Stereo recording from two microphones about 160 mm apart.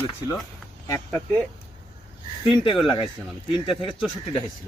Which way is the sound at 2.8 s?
30° left (ahead or behind).